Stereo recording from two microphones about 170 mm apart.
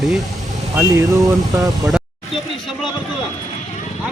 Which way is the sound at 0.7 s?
15° right (ahead or behind).